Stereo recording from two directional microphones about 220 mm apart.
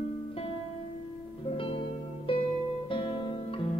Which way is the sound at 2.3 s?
25° left (ahead or behind).